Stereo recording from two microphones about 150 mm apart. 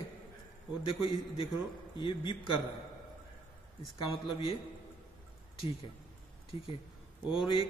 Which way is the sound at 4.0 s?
35° left (ahead or behind).